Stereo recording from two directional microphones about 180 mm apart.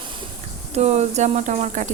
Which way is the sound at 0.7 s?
35° right (ahead or behind).